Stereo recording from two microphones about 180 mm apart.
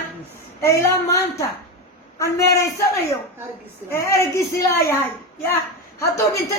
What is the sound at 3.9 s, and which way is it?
Speech, 15° left (ahead or behind).